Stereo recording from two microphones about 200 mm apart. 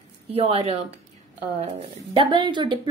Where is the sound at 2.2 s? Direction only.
25° right (ahead or behind).